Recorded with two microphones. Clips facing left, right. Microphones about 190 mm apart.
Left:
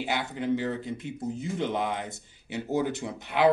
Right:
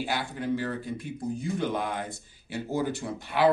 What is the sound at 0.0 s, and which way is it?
Speech, 20° left (ahead or behind).